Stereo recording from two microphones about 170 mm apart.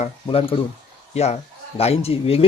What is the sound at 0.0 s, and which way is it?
Speech, 35° left (ahead or behind).